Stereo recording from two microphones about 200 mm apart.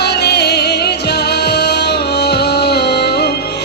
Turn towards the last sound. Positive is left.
turn(degrees=55)  # may be behind; listen again after turning